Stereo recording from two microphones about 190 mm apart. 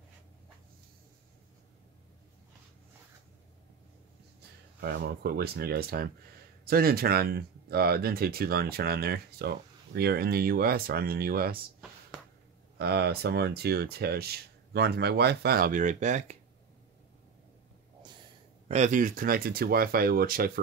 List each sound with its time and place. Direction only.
4.7 s speech: 60° right (ahead or behind)
12.7 s speech: 60° right (ahead or behind); by 16.3 s 40° right (ahead or behind)
18.7 s speech: 40° right (ahead or behind)